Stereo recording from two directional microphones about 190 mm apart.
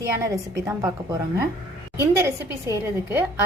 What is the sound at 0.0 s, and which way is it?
A woman's voice, 15° right (ahead or behind).